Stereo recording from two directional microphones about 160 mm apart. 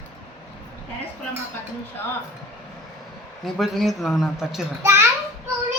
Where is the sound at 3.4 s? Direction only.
Centre (ahead or behind).